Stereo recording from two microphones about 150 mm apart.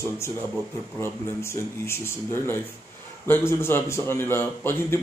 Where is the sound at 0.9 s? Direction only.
15° left (ahead or behind).